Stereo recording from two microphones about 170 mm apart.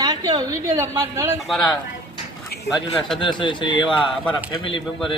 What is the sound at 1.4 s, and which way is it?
Speech, centre (ahead or behind).